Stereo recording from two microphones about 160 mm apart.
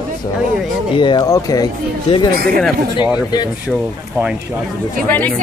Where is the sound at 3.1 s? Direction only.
25° left (ahead or behind).